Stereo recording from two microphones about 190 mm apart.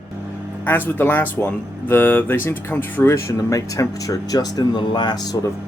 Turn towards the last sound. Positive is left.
turn(degrees=20)  # may be behind; listen again after turning